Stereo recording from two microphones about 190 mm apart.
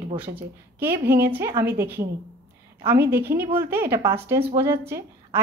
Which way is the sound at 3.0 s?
10° right (ahead or behind).